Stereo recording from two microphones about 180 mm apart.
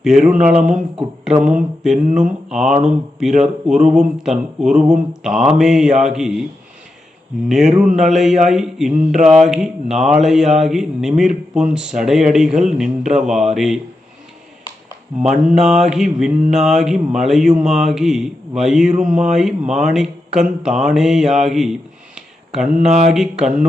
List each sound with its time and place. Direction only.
0.0 s mantra: 5° right (ahead or behind)
7.4 s mantra: centre (ahead or behind)
15.4 s mantra: 5° right (ahead or behind)
20.8 s speech: 5° right (ahead or behind)
22.9 s a sound: 40° right (ahead or behind)
23.1 s mantra: 5° right (ahead or behind)